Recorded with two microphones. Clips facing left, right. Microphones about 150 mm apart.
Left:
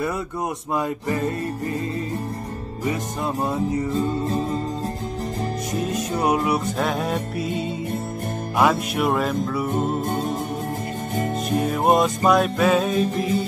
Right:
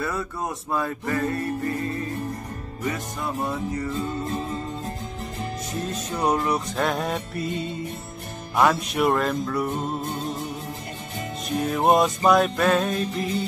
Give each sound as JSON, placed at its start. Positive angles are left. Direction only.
{"t": 0.7, "sound": "music", "side_deg": 20}
{"t": 2.8, "sound": "music", "side_deg": 25}
{"t": 4.2, "sound": "music", "side_deg": 35}
{"t": 5.9, "sound": "music", "side_deg": 10}
{"t": 10.0, "sound": "music", "side_deg": 55}
{"t": 11.6, "sound": "music", "side_deg": 0}